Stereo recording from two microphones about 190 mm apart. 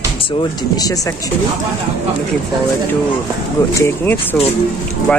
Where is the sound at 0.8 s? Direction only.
20° left (ahead or behind).